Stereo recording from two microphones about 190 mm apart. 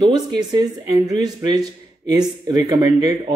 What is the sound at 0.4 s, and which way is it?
Speech, 20° right (ahead or behind).